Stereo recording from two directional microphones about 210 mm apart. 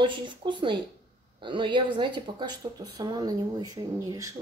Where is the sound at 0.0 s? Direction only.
25° right (ahead or behind).